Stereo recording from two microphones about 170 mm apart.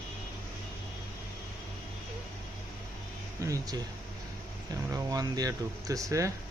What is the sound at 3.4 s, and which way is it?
Speech, 20° right (ahead or behind).